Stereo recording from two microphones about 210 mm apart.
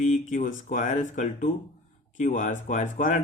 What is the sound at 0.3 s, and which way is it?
Speech, 40° left (ahead or behind).